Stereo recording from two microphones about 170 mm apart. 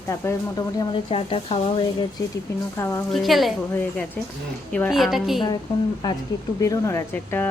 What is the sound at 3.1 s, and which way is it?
Speech, centre (ahead or behind).